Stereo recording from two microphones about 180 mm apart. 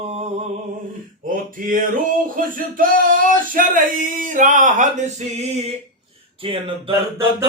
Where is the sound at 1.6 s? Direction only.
50° right (ahead or behind); by 6.9 s 30° right (ahead or behind).